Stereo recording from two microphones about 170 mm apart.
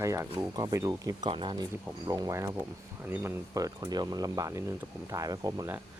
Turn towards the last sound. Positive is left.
turn(degrees=-15)  # may be behind; listen again after turning